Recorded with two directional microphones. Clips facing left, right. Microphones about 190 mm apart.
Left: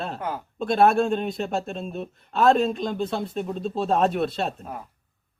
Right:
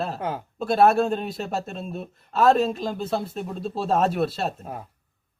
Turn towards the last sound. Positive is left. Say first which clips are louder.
# even
turn(degrees=-5)  # may be behind; listen again after turning